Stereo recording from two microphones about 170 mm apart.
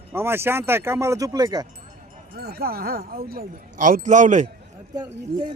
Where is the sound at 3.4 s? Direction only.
50° right (ahead or behind).